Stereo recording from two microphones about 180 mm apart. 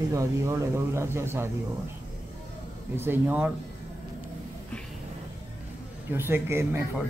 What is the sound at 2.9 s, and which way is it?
Speech, 10° right (ahead or behind).